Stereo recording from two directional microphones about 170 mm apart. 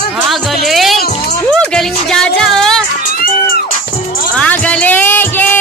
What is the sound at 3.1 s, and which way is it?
Music, 55° left (ahead or behind).